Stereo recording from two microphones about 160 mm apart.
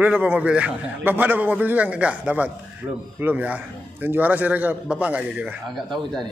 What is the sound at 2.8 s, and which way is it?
A man's voice, 20° right (ahead or behind).